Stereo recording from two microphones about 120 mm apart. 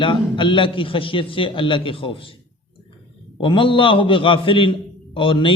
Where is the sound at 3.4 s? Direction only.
45° left (ahead or behind).